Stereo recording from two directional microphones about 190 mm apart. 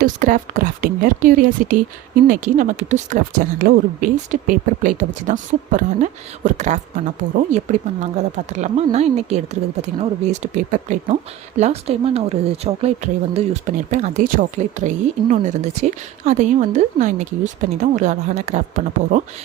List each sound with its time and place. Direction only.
0.0 s speech: 45° right (ahead or behind)